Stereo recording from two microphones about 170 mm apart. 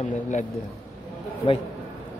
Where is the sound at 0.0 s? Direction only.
45° left (ahead or behind).